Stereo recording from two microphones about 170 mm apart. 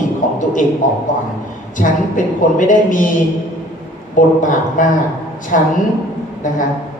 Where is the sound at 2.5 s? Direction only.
50° left (ahead or behind).